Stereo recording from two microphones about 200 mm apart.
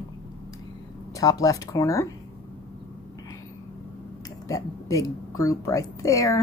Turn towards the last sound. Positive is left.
turn(degrees=15)  # may be behind; listen again after turning